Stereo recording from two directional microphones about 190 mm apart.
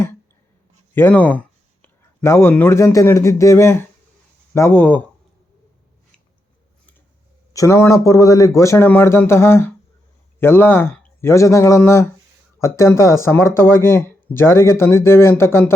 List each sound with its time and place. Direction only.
0.9 s speech: 10° left (ahead or behind)
7.5 s speech: 15° left (ahead or behind)